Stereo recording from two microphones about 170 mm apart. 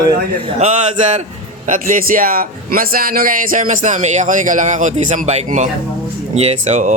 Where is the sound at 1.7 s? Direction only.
50° right (ahead or behind).